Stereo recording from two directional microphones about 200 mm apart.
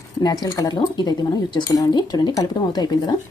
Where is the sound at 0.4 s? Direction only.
20° left (ahead or behind).